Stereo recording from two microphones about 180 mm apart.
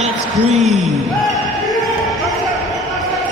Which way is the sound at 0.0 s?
40° right (ahead or behind).